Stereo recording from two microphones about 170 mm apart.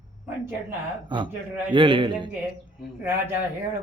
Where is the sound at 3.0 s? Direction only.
10° right (ahead or behind).